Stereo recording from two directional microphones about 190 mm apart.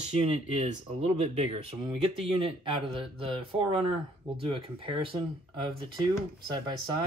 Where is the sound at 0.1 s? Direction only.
35° right (ahead or behind).